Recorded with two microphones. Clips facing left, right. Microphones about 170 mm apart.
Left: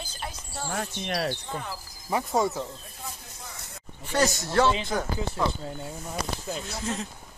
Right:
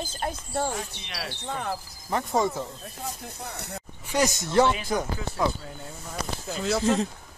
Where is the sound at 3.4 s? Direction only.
65° right (ahead or behind).